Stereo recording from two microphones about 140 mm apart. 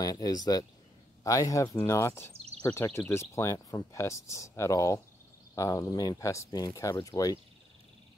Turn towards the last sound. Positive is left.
turn(degrees=25)  # may be behind; listen again after turning